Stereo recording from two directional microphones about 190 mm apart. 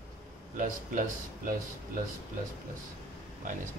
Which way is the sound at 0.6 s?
45° right (ahead or behind).